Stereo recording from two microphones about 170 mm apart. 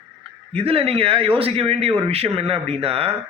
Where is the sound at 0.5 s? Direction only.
35° right (ahead or behind).